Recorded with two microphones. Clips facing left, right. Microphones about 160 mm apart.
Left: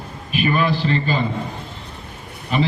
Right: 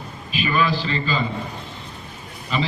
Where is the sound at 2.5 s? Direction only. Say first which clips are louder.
Left 4 dB; 55° left (ahead or behind).